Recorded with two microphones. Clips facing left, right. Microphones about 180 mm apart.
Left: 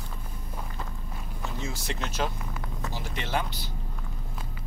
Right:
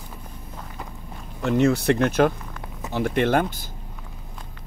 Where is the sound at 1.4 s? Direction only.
70° right (ahead or behind); by 3.7 s 55° right (ahead or behind).